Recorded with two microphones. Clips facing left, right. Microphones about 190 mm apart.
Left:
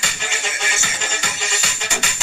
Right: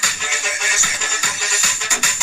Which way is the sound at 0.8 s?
20° left (ahead or behind).